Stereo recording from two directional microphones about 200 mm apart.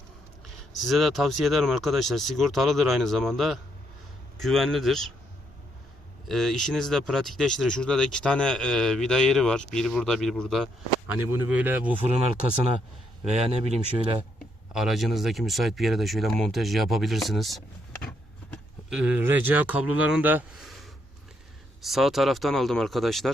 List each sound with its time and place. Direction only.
0.9 s speech: centre (ahead or behind)
6.2 s speech: centre (ahead or behind)
11.1 s speech: 10° right (ahead or behind)
13.2 s speech: 35° right (ahead or behind)
14.7 s speech: centre (ahead or behind)